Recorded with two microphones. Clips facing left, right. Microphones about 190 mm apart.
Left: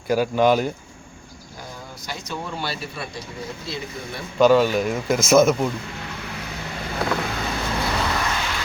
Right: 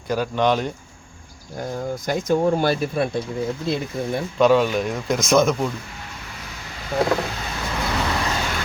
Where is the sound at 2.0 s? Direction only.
50° right (ahead or behind).